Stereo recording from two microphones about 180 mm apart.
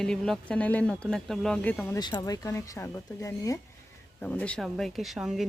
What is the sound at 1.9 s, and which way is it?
Speech, 20° left (ahead or behind).